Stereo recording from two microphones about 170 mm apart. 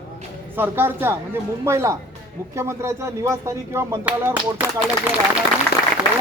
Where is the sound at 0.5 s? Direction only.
10° right (ahead or behind).